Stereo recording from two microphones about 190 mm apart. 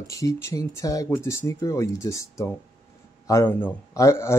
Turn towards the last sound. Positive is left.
turn(degrees=15)  # may be behind; listen again after turning